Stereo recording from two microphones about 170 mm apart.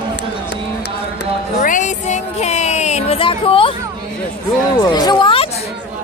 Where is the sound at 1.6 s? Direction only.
50° left (ahead or behind); by 3.7 s 30° left (ahead or behind).